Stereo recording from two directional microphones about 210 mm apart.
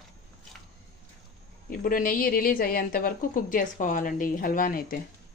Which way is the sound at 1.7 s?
40° left (ahead or behind).